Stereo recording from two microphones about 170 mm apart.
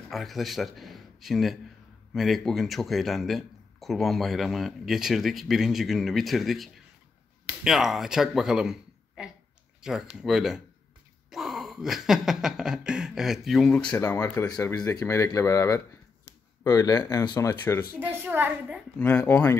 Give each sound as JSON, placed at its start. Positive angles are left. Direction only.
{"t": 0.1, "sound": "a man's voice", "side_deg": 0}
{"t": 9.8, "sound": "a sound", "side_deg": -5}
{"t": 10.1, "sound": "speech", "side_deg": -5}
{"t": 17.9, "sound": "a woman's voice", "side_deg": -10}
{"t": 18.9, "sound": "speech", "side_deg": 10}